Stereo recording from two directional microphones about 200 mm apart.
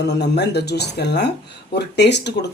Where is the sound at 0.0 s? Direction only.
55° left (ahead or behind).